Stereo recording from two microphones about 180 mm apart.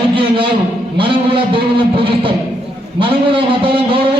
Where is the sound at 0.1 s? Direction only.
30° right (ahead or behind).